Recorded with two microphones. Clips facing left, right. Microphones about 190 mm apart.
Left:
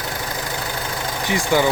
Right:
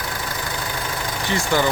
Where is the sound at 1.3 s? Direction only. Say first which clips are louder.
Left 2 dB; 15° left (ahead or behind).